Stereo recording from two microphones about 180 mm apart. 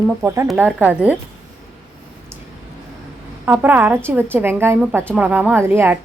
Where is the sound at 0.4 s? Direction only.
5° right (ahead or behind).